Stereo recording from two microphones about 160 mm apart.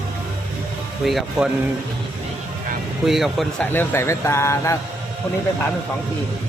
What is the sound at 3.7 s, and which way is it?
Speech, 15° left (ahead or behind).